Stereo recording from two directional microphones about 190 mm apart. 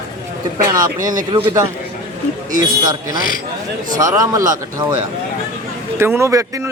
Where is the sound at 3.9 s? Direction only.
15° right (ahead or behind).